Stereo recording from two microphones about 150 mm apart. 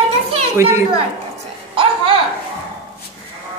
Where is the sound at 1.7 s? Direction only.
35° right (ahead or behind).